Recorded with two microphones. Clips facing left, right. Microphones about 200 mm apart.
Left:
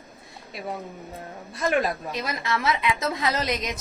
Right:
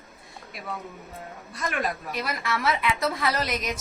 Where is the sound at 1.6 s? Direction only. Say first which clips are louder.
Left 5 dB; 25° left (ahead or behind).